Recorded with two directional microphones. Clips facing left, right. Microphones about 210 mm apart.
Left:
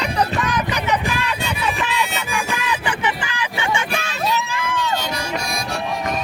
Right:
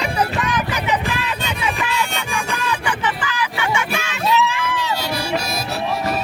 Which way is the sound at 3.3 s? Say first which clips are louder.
Right 1 dB; 30° left (ahead or behind).